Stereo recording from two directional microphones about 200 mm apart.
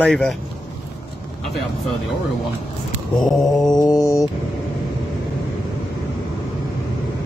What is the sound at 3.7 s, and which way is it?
Mantra, 15° left (ahead or behind).